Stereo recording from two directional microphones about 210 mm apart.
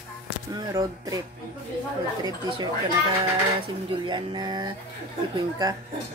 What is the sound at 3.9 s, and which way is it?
Speech, 20° right (ahead or behind).